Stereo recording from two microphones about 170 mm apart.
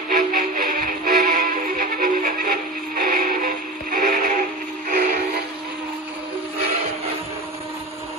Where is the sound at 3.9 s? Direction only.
55° right (ahead or behind).